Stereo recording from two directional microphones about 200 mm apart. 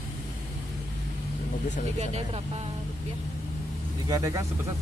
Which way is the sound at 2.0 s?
30° right (ahead or behind).